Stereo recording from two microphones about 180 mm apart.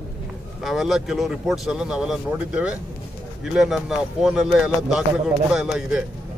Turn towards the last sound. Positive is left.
turn(degrees=-5)  # may be behind; listen again after turning